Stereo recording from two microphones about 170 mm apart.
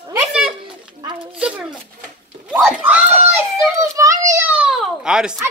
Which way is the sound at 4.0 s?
20° right (ahead or behind).